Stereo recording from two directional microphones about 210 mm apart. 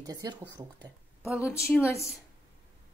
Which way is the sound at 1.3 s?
Centre (ahead or behind).